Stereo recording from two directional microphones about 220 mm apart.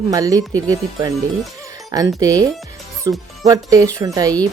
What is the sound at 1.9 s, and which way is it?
Speech, 15° right (ahead or behind).